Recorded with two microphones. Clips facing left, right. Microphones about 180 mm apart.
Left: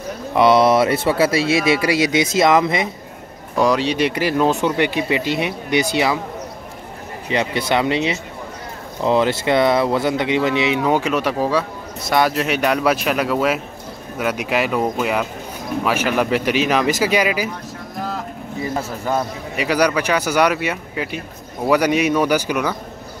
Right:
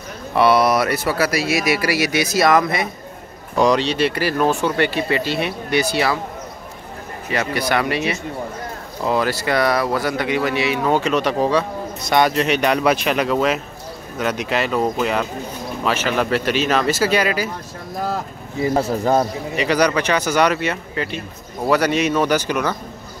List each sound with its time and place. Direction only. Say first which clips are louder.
0.3 s speech: left 2 dB; 20° left (ahead or behind)
3.5 s speech: right 1 dB; 5° left (ahead or behind)
3.9 s speech: left 1 dB; 15° left (ahead or behind)
7.2 s speech: left 1 dB; 20° left (ahead or behind)
18.8 s a man's voice: right 5 dB; 35° right (ahead or behind)
19.5 s speech: even; 5° left (ahead or behind)